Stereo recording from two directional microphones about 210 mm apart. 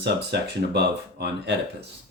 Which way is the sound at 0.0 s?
55° right (ahead or behind).